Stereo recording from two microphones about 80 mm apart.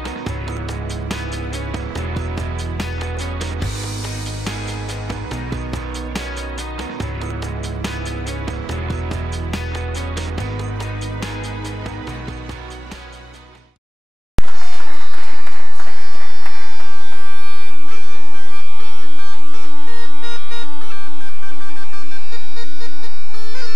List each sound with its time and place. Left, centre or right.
0.0 s music: centre
14.4 s music: centre